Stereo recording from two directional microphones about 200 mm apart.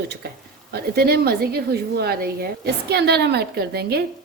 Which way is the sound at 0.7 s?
50° right (ahead or behind).